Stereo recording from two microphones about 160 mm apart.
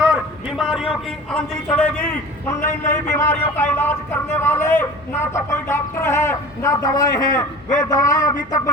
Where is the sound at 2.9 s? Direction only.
15° left (ahead or behind).